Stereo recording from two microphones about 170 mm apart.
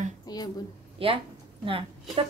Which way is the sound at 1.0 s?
35° right (ahead or behind).